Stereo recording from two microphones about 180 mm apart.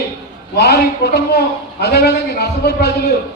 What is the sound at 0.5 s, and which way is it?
A man's voice, 65° left (ahead or behind).